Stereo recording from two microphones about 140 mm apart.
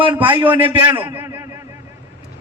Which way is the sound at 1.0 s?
15° right (ahead or behind).